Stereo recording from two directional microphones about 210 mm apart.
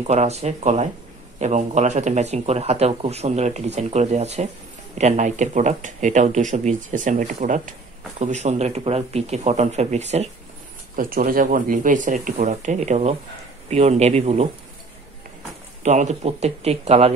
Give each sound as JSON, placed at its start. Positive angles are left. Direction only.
{"t": 0.0, "sound": "a man's voice", "side_deg": -30}
{"t": 15.8, "sound": "a man's voice", "side_deg": -35}